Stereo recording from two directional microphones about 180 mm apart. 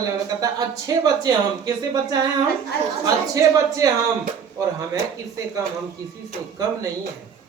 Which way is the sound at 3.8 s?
20° right (ahead or behind).